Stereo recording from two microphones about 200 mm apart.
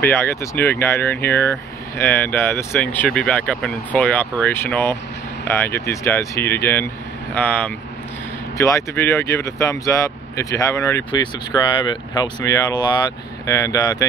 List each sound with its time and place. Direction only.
0.0 s speech: 10° left (ahead or behind)